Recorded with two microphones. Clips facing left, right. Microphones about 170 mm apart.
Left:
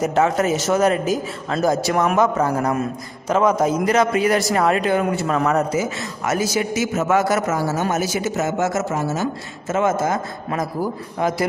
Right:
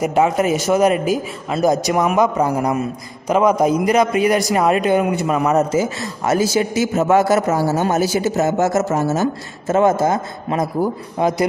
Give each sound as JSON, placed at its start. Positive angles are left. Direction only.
{"t": 0.0, "sound": "a man's voice", "side_deg": -10}